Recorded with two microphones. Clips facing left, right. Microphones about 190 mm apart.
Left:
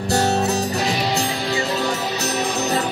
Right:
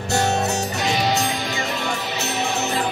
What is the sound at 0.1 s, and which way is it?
Music, 35° left (ahead or behind).